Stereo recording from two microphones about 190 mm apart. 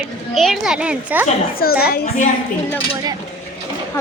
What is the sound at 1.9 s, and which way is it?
Speech, 40° left (ahead or behind).